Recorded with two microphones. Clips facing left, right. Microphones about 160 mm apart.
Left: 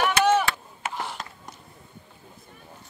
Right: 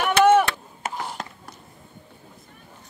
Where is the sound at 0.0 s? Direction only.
55° right (ahead or behind).